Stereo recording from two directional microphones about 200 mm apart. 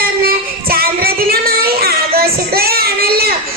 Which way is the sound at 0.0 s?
50° right (ahead or behind).